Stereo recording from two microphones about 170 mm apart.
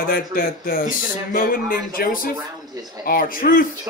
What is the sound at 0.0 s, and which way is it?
Speech, 60° left (ahead or behind).